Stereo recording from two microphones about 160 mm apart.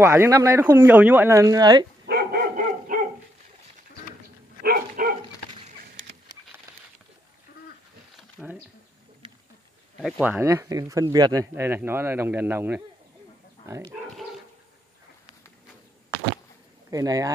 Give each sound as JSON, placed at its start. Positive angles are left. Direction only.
{"t": 0.0, "sound": "speech", "side_deg": -15}
{"t": 2.0, "sound": "dog", "side_deg": -75}
{"t": 4.6, "sound": "dog", "side_deg": -70}
{"t": 8.2, "sound": "a sound", "side_deg": -5}
{"t": 9.9, "sound": "a man's voice", "side_deg": 0}
{"t": 16.9, "sound": "a man's voice", "side_deg": -20}